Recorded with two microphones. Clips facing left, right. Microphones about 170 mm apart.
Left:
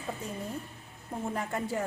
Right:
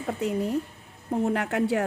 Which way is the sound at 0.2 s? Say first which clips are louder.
Right 11 dB; 75° right (ahead or behind).